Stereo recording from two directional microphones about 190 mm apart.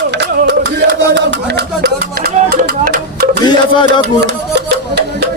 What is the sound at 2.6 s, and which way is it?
Music, 55° right (ahead or behind).